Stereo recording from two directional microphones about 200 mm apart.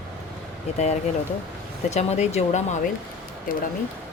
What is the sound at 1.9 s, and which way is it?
Speech, 35° left (ahead or behind).